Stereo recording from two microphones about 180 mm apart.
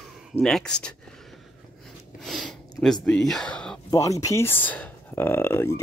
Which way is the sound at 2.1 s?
Centre (ahead or behind).